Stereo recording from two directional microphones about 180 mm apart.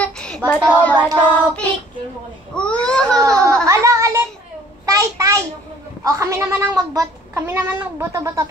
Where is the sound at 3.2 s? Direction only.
20° right (ahead or behind).